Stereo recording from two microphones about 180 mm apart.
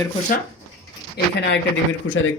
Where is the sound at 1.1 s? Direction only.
70° left (ahead or behind).